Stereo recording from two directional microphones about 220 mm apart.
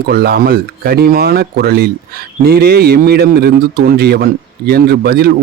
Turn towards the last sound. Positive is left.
turn(degrees=-45)  # may be behind; listen again after turning